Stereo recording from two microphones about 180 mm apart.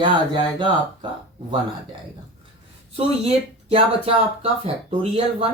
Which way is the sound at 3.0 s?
35° right (ahead or behind).